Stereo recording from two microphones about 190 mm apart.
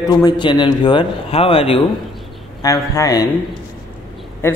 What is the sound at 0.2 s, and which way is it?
Speech, 25° left (ahead or behind).